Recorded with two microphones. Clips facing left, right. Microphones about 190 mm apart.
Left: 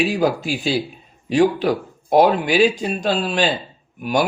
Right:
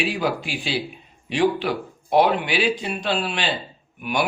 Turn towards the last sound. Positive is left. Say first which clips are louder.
# left 4 dB
turn(degrees=40)  # may be behind; listen again after turning